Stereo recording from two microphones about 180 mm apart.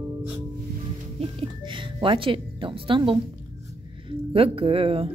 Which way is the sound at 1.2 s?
30° right (ahead or behind).